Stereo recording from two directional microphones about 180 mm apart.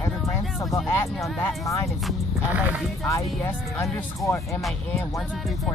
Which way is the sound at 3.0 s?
15° left (ahead or behind).